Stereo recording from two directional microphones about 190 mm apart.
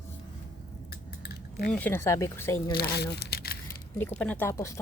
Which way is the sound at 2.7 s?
55° left (ahead or behind).